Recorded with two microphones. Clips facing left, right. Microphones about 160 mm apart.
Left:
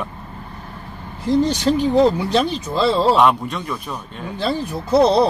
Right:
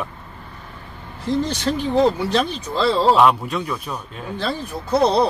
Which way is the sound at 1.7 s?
25° left (ahead or behind).